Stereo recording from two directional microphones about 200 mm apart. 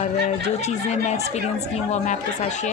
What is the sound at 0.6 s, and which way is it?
Speech, 35° left (ahead or behind).